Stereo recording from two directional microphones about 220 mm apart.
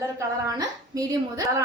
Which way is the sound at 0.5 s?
15° right (ahead or behind).